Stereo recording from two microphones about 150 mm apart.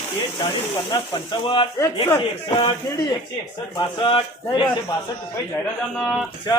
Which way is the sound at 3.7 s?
35° left (ahead or behind).